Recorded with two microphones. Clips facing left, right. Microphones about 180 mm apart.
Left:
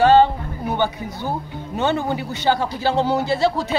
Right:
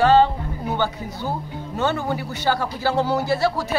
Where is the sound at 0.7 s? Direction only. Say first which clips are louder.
Left 2 dB; 20° left (ahead or behind).